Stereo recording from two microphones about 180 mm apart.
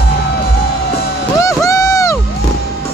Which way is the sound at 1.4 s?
15° left (ahead or behind).